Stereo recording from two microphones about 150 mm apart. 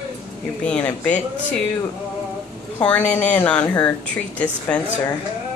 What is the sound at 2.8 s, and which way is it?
Speech, 10° left (ahead or behind).